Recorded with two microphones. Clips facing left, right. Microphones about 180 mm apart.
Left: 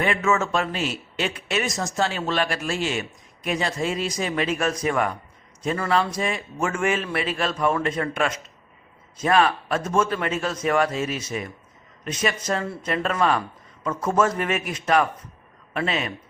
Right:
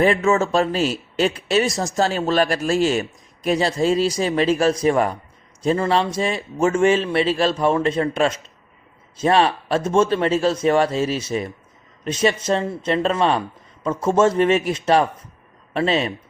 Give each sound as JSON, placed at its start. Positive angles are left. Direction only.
{"t": 0.0, "sound": "a man's voice", "side_deg": -35}